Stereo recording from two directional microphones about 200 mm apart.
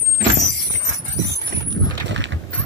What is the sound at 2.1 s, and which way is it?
Mechanisms, 65° right (ahead or behind).